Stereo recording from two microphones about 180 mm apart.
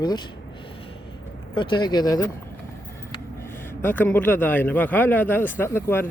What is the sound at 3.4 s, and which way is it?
A man's voice, 10° left (ahead or behind).